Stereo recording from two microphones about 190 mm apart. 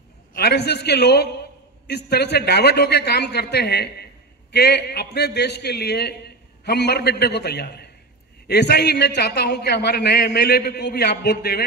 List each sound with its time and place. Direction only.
0.3 s a man's voice: 55° left (ahead or behind)